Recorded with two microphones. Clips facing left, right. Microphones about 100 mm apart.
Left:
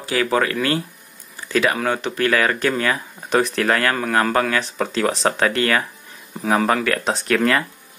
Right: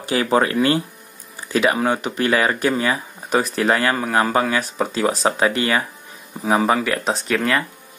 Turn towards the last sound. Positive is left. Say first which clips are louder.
# left 2 dB
turn(degrees=0)  # may be behind; listen again after turning